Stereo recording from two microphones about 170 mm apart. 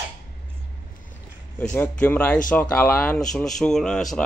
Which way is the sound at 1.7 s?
10° left (ahead or behind).